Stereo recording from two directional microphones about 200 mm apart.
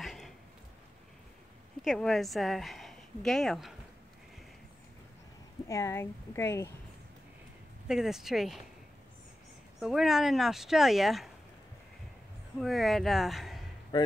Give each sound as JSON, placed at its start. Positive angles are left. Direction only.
{"t": 0.0, "sound": "a sound", "side_deg": 0}
{"t": 1.8, "sound": "a woman's voice", "side_deg": 0}
{"t": 5.7, "sound": "a woman's voice", "side_deg": 15}
{"t": 7.9, "sound": "speech", "side_deg": 0}
{"t": 9.8, "sound": "speech", "side_deg": 0}
{"t": 12.5, "sound": "speech", "side_deg": 0}
{"t": 13.9, "sound": "a man's voice", "side_deg": 20}